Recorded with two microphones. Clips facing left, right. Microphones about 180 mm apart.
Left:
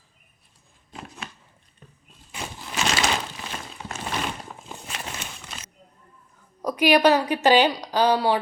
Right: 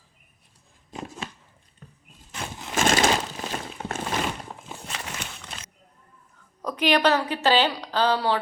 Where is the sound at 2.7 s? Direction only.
50° right (ahead or behind).